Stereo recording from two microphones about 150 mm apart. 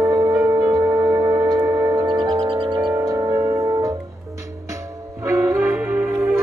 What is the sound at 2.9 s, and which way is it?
Music, 25° right (ahead or behind).